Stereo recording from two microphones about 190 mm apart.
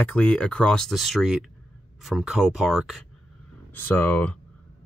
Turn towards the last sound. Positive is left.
turn(degrees=10)  # may be behind; listen again after turning